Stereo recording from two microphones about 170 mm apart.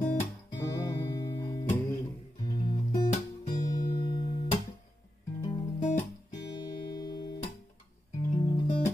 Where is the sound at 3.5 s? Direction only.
50° left (ahead or behind).